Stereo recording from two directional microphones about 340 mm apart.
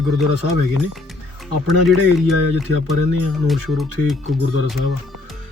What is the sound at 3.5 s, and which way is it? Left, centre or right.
Speech, centre.